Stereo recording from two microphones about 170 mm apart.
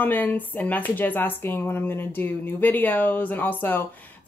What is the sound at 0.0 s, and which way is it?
Speech, 10° left (ahead or behind).